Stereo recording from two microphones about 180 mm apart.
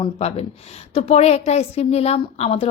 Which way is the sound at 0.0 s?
35° left (ahead or behind).